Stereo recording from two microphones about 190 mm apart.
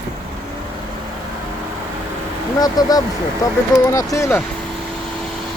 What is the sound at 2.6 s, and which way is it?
Speech, 20° left (ahead or behind).